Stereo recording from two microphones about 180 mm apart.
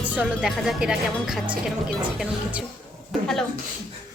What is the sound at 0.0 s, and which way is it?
Speech, 5° right (ahead or behind).